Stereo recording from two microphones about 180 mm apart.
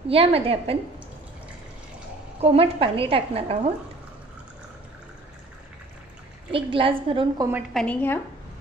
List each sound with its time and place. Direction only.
0.1 s a woman's voice: 30° right (ahead or behind)
2.4 s a woman's voice: 30° right (ahead or behind)
6.5 s a woman's voice: 30° right (ahead or behind)
7.7 s a woman's voice: 5° left (ahead or behind)